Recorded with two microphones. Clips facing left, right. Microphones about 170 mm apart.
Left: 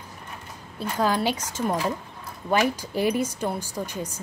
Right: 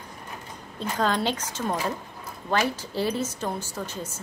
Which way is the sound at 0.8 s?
10° left (ahead or behind).